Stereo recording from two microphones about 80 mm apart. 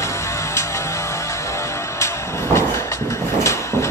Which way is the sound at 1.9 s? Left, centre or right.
Left.